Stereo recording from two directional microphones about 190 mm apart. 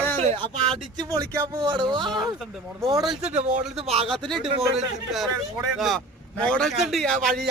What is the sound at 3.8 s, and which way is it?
Speech, 30° right (ahead or behind).